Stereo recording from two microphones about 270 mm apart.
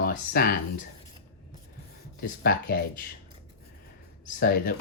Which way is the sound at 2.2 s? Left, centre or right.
Left.